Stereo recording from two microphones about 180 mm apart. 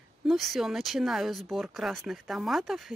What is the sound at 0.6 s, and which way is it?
Speech, centre (ahead or behind).